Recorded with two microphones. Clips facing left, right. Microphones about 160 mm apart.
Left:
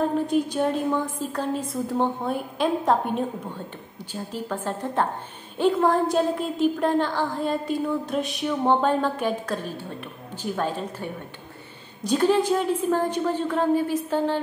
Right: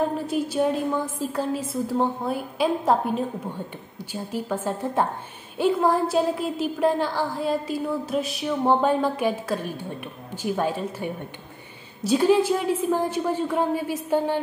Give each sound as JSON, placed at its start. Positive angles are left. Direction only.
{"t": 0.3, "sound": "a woman's voice", "side_deg": -5}